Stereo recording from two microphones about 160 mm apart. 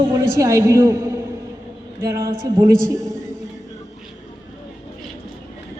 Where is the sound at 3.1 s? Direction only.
45° left (ahead or behind).